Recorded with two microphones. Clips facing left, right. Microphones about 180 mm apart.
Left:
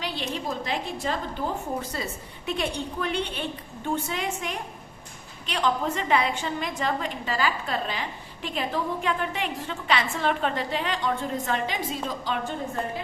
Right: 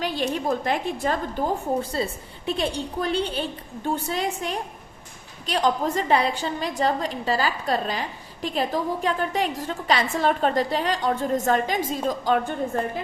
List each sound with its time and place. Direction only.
0.0 s a woman's voice: 50° right (ahead or behind)
1.8 s a woman's voice: 30° right (ahead or behind); by 12.5 s 50° right (ahead or behind)